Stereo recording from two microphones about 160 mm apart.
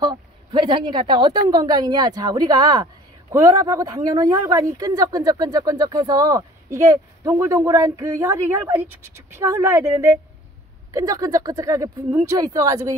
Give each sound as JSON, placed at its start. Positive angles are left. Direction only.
{"t": 0.0, "sound": "a woman's voice", "side_deg": -25}